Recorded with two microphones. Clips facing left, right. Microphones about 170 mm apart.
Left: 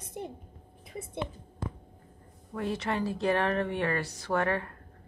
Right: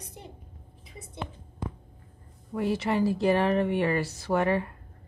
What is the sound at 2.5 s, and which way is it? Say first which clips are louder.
Speech: right 4 dB; 5° right (ahead or behind).